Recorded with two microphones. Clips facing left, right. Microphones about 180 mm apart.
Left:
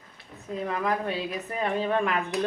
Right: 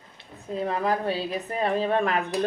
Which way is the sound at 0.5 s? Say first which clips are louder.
Right 2 dB; 30° right (ahead or behind).